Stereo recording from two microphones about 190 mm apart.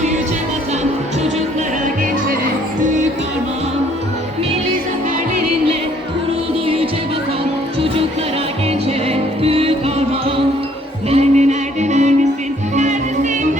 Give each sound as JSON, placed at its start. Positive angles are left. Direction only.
{"t": 9.0, "sound": "music", "side_deg": -30}